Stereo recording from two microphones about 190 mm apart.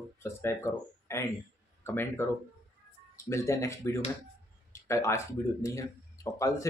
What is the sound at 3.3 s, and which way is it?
Speech, 15° left (ahead or behind).